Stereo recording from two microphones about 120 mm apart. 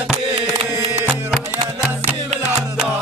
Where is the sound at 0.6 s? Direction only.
60° right (ahead or behind).